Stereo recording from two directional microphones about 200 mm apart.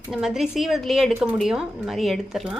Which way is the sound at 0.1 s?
Centre (ahead or behind).